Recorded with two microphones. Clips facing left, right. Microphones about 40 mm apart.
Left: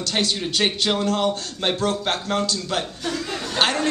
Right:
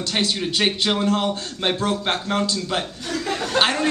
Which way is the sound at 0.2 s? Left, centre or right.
Centre.